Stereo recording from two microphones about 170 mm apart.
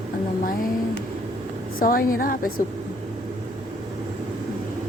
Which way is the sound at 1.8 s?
55° left (ahead or behind).